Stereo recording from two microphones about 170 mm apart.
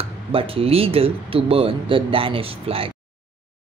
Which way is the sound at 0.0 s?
35° right (ahead or behind).